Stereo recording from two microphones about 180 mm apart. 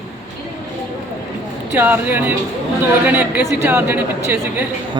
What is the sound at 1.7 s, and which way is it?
A woman's voice, 10° right (ahead or behind).